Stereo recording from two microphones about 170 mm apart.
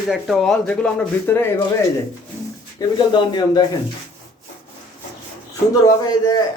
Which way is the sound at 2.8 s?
25° left (ahead or behind).